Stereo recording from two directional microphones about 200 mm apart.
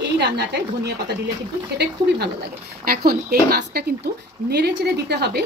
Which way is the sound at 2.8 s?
50° right (ahead or behind).